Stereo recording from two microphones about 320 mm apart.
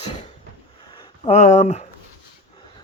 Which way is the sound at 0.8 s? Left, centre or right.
Centre.